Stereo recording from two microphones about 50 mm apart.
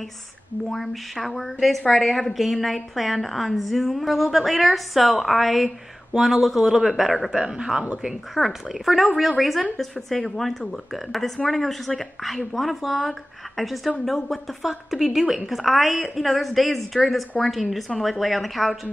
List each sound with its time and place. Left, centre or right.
0.7 s a woman's voice: centre
7.2 s speech: centre
7.8 s a woman's voice: right
8.4 s a woman's voice: centre